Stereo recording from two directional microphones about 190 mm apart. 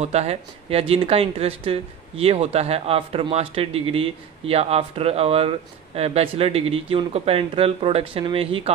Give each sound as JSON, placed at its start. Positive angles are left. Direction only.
{"t": 0.0, "sound": "speech", "side_deg": -35}